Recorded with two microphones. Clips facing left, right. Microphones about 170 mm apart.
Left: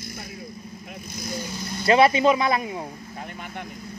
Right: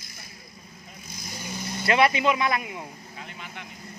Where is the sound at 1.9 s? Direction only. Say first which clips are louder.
Left 5 dB; 30° left (ahead or behind).